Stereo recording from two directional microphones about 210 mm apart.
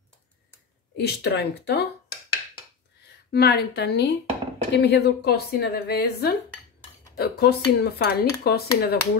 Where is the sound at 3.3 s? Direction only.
50° left (ahead or behind).